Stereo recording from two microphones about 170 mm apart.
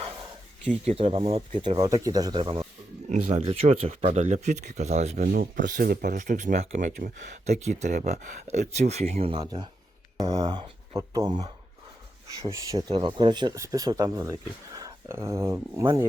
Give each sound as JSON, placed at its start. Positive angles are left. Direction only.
{"t": 0.9, "sound": "speech", "side_deg": -35}
{"t": 3.1, "sound": "speech", "side_deg": -40}
{"t": 9.4, "sound": "speech", "side_deg": -25}